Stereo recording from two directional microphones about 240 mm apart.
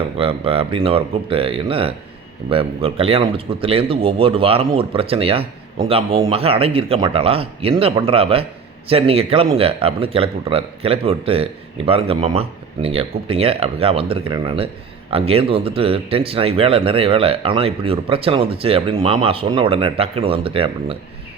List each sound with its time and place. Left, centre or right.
0.2 s a man's voice: right